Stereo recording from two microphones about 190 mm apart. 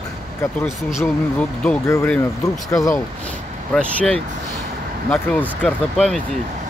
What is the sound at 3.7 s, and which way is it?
Speech, 5° left (ahead or behind).